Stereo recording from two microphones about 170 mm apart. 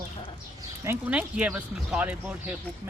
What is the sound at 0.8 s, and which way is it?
Speech, 10° right (ahead or behind).